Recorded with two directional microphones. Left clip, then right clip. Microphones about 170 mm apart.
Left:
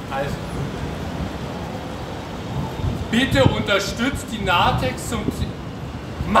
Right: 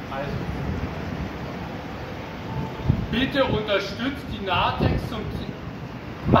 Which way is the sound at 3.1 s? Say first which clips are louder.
Left 5 dB; 15° left (ahead or behind).